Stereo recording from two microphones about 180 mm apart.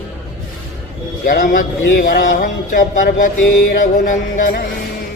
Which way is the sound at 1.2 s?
50° left (ahead or behind).